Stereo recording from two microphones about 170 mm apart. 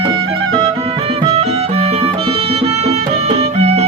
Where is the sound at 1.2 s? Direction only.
35° right (ahead or behind).